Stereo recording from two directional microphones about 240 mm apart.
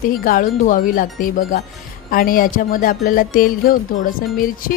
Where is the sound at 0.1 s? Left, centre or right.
Left.